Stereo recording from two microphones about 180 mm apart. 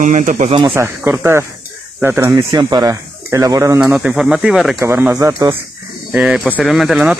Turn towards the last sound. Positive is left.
turn(degrees=0)  # may be behind; listen again after turning